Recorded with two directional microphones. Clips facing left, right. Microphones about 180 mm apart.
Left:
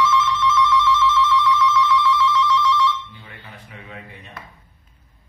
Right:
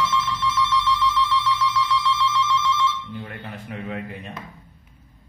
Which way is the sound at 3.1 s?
55° right (ahead or behind).